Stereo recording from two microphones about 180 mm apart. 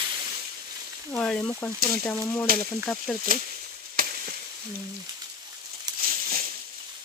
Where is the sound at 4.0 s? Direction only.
55° right (ahead or behind).